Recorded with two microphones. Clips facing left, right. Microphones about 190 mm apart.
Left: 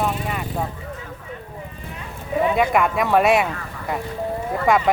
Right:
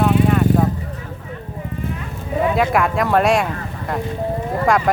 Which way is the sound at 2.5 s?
Centre (ahead or behind).